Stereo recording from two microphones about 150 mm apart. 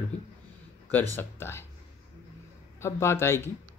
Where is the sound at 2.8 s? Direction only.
20° left (ahead or behind).